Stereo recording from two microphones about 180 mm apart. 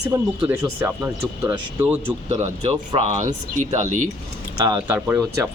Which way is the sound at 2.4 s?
35° right (ahead or behind).